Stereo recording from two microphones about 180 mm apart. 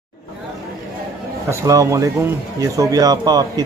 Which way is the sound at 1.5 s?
15° right (ahead or behind).